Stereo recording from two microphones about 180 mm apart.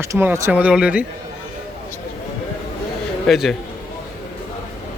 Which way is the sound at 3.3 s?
Centre (ahead or behind).